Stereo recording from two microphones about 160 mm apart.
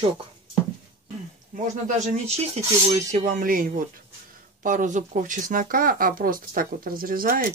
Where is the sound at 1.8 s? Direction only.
45° right (ahead or behind); by 7.5 s 65° right (ahead or behind).